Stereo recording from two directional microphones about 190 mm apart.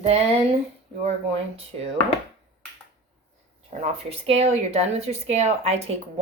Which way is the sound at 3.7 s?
30° right (ahead or behind).